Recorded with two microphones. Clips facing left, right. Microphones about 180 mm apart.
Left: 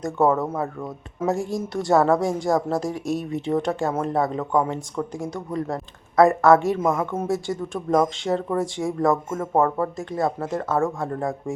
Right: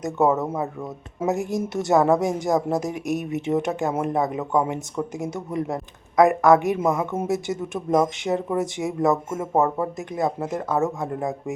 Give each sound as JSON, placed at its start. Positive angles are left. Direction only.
{"t": 0.0, "sound": "a woman's voice", "side_deg": -20}